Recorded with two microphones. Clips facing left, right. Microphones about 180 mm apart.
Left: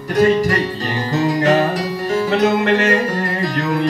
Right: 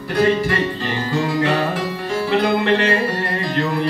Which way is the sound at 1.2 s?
40° left (ahead or behind).